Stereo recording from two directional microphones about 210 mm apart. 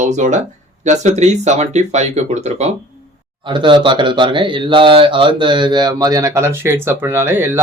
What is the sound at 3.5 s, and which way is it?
Speech, 20° right (ahead or behind).